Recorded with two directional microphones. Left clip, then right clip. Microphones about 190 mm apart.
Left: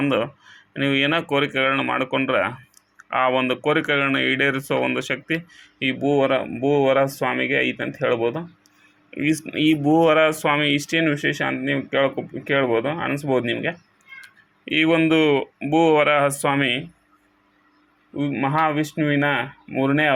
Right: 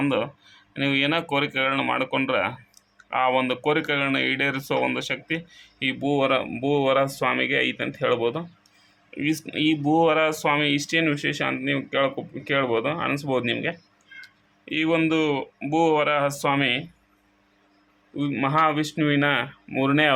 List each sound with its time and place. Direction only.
0.0 s speech: 10° left (ahead or behind)
14.6 s speech: 15° left (ahead or behind)
18.2 s speech: centre (ahead or behind)